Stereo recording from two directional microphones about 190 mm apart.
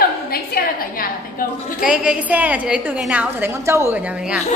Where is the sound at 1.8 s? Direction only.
5° right (ahead or behind).